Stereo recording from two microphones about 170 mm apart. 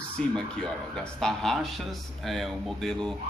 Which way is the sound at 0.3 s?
5° left (ahead or behind).